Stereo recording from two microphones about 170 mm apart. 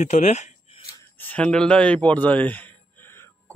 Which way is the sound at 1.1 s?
10° left (ahead or behind).